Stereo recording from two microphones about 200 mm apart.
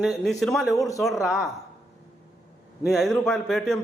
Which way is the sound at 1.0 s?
Centre (ahead or behind).